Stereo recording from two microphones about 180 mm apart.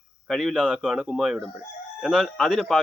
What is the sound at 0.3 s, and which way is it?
Speech, centre (ahead or behind).